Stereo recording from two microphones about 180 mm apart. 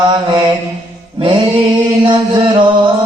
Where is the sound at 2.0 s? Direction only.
25° right (ahead or behind).